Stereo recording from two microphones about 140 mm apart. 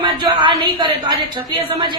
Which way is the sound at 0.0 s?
35° right (ahead or behind).